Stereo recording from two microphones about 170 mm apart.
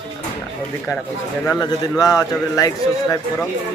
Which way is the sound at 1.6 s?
25° left (ahead or behind).